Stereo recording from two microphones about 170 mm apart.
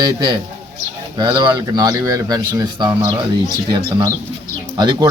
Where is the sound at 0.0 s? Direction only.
25° right (ahead or behind).